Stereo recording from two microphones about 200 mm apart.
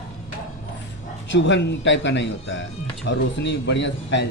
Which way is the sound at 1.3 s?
60° left (ahead or behind).